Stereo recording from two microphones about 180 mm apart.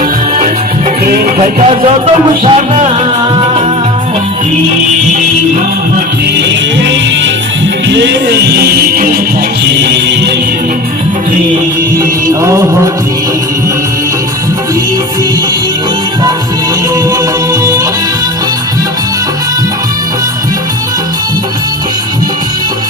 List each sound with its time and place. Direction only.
1.0 s music: 50° right (ahead or behind)
1.6 s music: 30° right (ahead or behind)
7.9 s music: 75° right (ahead or behind); by 9.1 s 55° right (ahead or behind)
9.6 s music: 70° right (ahead or behind)
12.3 s music: 15° right (ahead or behind)